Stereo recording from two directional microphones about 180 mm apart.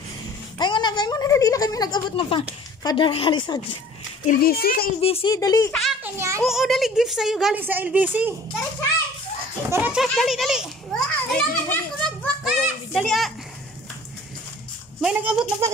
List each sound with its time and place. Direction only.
0.6 s a sound: 25° left (ahead or behind)
2.8 s a woman's voice: 25° left (ahead or behind)
4.3 s a child's voice: 55° left (ahead or behind)
5.0 s speech: 30° left (ahead or behind)
5.3 s a woman's voice: 20° left (ahead or behind)
5.7 s a child's voice: centre (ahead or behind)
6.1 s a child's voice: 15° right (ahead or behind)
6.5 s a woman's voice: centre (ahead or behind)
9.7 s a child's voice: 10° right (ahead or behind)
12.2 s children playing: centre (ahead or behind)
15.0 s a woman's voice: 5° right (ahead or behind)